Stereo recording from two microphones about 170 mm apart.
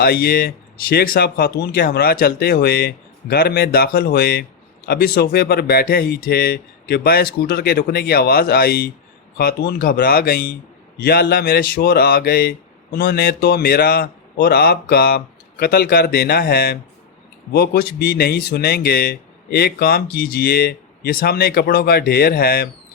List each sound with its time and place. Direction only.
0.0 s speech: 65° left (ahead or behind)